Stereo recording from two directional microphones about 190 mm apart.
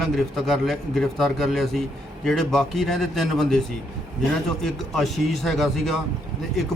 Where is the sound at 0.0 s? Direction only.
Centre (ahead or behind).